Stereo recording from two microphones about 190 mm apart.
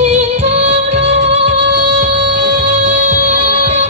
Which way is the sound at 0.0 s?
35° right (ahead or behind).